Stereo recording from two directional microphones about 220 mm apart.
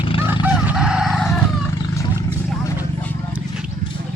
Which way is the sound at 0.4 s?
5° right (ahead or behind).